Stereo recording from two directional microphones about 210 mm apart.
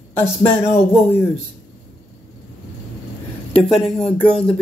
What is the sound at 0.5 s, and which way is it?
Speech, 25° left (ahead or behind).